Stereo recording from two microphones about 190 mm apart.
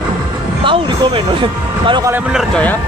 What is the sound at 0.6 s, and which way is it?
Speech, 25° right (ahead or behind).